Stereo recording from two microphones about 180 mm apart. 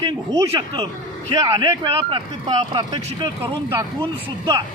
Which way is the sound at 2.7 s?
25° right (ahead or behind).